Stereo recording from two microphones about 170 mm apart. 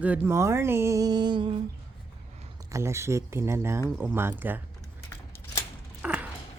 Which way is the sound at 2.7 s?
15° right (ahead or behind).